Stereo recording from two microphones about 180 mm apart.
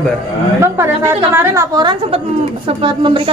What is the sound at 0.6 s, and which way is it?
A woman's voice, 15° right (ahead or behind).